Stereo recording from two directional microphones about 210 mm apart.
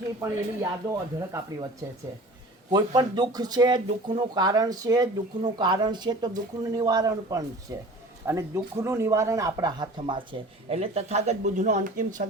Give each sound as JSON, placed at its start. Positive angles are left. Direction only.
{"t": 0.2, "sound": "speech", "side_deg": -15}
{"t": 2.6, "sound": "speech", "side_deg": -20}